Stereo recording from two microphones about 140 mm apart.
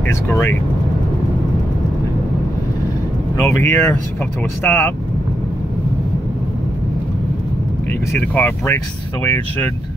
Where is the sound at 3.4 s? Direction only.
20° left (ahead or behind).